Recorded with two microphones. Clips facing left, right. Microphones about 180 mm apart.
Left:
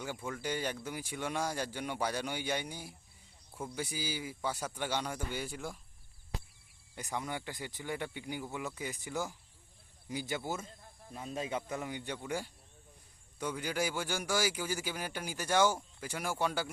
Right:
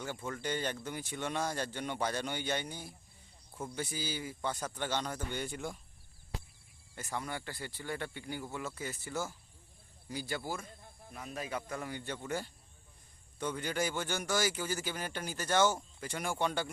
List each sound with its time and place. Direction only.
0.0 s a man's voice: 10° left (ahead or behind)
6.9 s a man's voice: 15° left (ahead or behind)